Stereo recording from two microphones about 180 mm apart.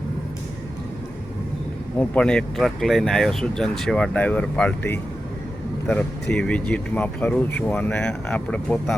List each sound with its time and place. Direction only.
2.0 s speech: 5° left (ahead or behind)
6.3 s speech: 5° left (ahead or behind)